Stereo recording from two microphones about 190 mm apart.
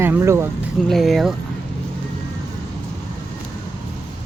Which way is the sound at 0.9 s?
Centre (ahead or behind).